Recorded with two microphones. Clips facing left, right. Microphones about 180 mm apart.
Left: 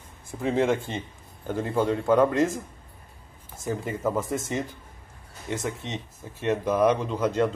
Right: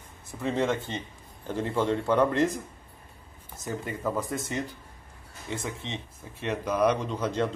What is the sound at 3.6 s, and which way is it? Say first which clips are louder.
Speech: left 4 dB; 20° left (ahead or behind).